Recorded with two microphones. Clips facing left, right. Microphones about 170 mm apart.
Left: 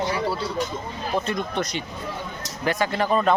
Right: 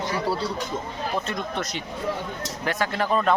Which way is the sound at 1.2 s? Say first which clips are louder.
Left 3 dB; centre (ahead or behind).